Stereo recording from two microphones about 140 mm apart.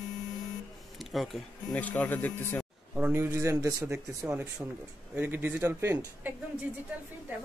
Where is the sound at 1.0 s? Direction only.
Centre (ahead or behind).